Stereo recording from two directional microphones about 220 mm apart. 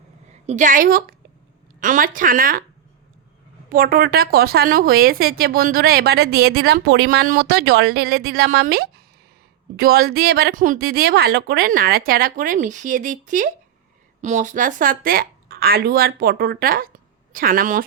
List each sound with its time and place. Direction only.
0.4 s speech: 35° right (ahead or behind)
3.7 s a woman's voice: 40° right (ahead or behind)